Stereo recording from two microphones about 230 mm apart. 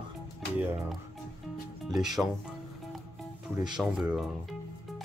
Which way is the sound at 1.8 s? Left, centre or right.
Centre.